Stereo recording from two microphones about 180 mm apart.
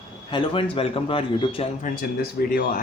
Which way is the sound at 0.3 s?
30° left (ahead or behind).